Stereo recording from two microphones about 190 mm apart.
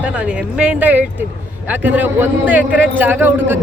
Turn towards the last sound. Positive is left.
turn(degrees=-10)  # may be behind; listen again after turning